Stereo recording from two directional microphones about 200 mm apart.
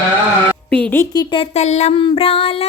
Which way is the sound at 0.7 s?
10° left (ahead or behind).